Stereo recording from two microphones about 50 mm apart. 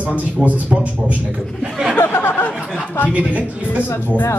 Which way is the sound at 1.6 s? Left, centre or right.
Centre.